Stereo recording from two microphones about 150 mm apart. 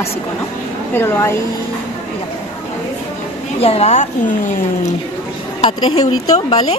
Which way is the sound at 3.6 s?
45° left (ahead or behind).